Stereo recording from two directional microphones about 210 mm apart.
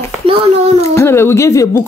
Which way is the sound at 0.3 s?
25° right (ahead or behind).